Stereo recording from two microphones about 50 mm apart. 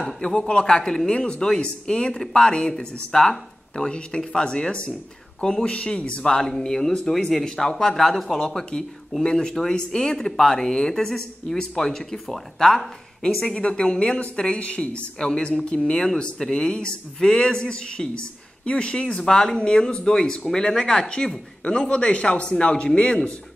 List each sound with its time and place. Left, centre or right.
0.4 s a woman's voice: centre
6.2 s a woman's voice: centre